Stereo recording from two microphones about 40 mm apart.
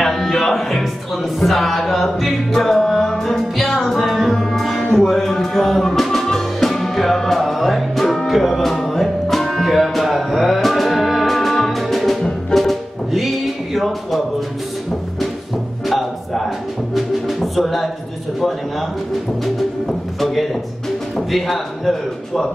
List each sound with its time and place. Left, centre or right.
0.0 s music: centre
1.4 s a man's voice: centre
2.6 s music: centre
12.2 s music: left
12.5 s music: centre
15.9 s music: centre
19.4 s music: centre
21.3 s a man's voice: centre